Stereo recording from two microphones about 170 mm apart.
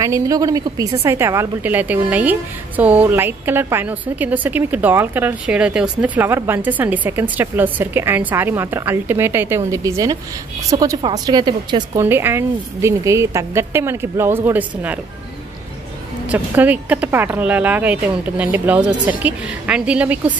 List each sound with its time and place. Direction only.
0.0 s a woman's voice: 20° right (ahead or behind)
12.0 s a woman's voice: 15° right (ahead or behind)
16.3 s a woman's voice: 10° right (ahead or behind)